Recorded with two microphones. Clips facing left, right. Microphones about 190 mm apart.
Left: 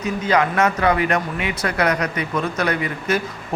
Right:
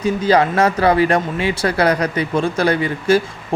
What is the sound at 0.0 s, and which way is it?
A man's voice, 30° right (ahead or behind).